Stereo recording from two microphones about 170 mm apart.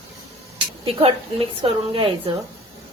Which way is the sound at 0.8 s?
35° right (ahead or behind).